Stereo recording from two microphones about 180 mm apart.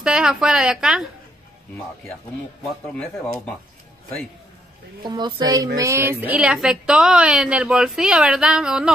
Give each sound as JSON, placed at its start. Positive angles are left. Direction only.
{"t": 0.0, "sound": "a woman's voice", "side_deg": -5}
{"t": 2.9, "sound": "speech", "side_deg": 5}
{"t": 5.0, "sound": "a woman's voice", "side_deg": -25}